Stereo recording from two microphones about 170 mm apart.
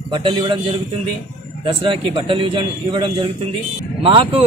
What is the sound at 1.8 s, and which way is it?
A man's voice, 30° right (ahead or behind).